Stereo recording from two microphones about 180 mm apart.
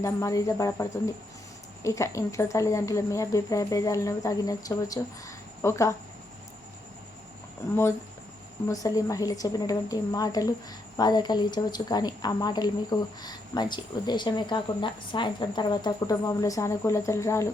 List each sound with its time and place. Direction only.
0.0 s speech: 15° left (ahead or behind)
8.6 s speech: 20° left (ahead or behind)